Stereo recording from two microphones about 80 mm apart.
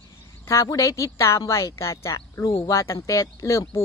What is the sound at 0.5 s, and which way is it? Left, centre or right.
Speech, left.